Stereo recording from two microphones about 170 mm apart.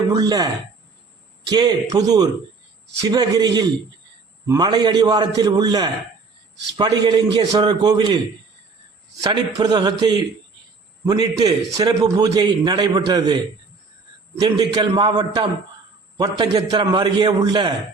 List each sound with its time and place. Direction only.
0.1 s a man's voice: 20° right (ahead or behind)
1.5 s a man's voice: 25° right (ahead or behind)
9.2 s a man's voice: 25° right (ahead or behind)